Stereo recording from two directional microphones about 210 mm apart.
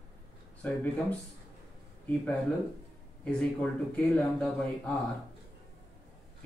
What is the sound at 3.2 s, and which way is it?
Speech, 5° left (ahead or behind).